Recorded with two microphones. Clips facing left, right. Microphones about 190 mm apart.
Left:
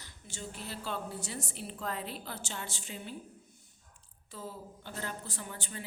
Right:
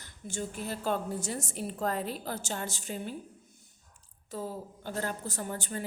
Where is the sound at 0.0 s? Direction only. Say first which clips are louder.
Right 8 dB; 50° right (ahead or behind).